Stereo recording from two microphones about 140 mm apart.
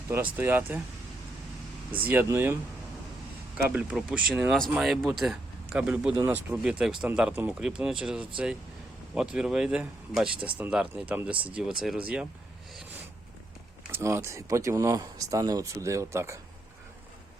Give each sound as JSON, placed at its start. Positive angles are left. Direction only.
{"t": 0.3, "sound": "speech", "side_deg": -15}
{"t": 1.9, "sound": "speech", "side_deg": -15}
{"t": 3.7, "sound": "speech", "side_deg": -5}
{"t": 13.9, "sound": "speech", "side_deg": -20}